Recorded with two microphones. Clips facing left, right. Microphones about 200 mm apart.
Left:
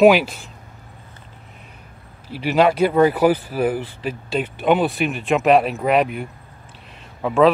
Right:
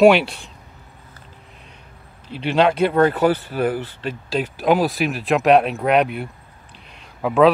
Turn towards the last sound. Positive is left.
turn(degrees=-5)  # may be behind; listen again after turning